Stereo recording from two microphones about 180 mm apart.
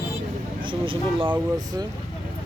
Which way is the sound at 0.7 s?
30° right (ahead or behind).